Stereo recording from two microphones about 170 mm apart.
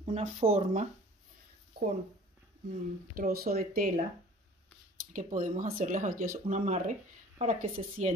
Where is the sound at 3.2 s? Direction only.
60° right (ahead or behind).